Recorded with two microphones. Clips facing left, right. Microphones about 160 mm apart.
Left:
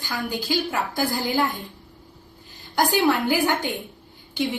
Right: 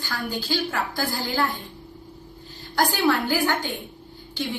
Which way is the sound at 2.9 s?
20° left (ahead or behind).